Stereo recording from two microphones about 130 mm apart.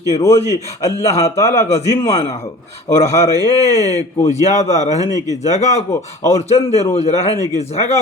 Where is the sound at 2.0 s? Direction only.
50° left (ahead or behind).